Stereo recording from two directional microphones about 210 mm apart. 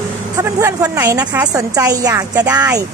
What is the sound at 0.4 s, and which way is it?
A woman's voice, 15° right (ahead or behind).